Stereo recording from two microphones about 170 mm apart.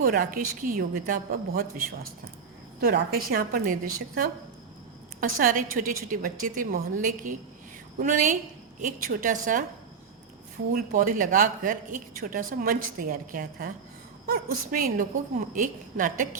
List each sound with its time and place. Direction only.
0.0 s a woman's voice: 55° right (ahead or behind)
5.4 s a woman's voice: 55° right (ahead or behind)
10.7 s a woman's voice: 50° right (ahead or behind)